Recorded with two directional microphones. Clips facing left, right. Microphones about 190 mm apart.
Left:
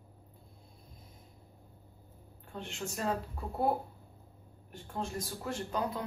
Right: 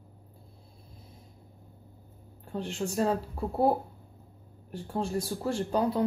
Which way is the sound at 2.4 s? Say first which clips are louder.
Right 8 dB; 35° right (ahead or behind).